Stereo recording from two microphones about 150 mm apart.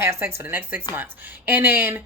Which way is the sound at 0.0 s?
15° right (ahead or behind).